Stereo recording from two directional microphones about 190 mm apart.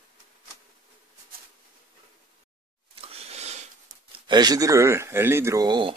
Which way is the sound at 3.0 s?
35° right (ahead or behind).